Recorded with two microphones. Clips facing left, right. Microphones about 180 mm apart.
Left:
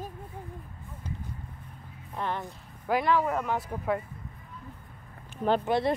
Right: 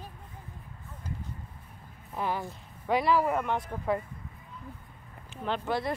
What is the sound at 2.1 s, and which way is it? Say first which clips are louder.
Speech: right 1 dB; 5° right (ahead or behind).